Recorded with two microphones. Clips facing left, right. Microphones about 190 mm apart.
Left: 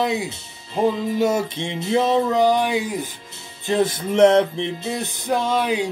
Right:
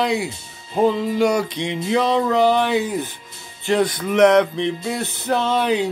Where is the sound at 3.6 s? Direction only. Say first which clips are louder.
Right 1 dB; 25° left (ahead or behind).